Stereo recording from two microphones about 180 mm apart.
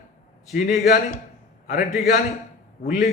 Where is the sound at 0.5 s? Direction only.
50° left (ahead or behind).